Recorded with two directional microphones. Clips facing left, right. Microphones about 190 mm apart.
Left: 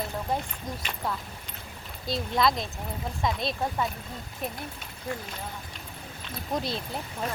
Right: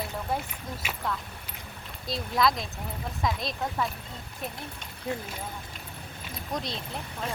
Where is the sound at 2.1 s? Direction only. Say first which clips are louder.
Left 1 dB; centre (ahead or behind).